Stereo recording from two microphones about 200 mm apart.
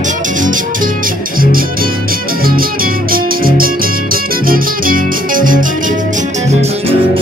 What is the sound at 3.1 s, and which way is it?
Music, 45° right (ahead or behind).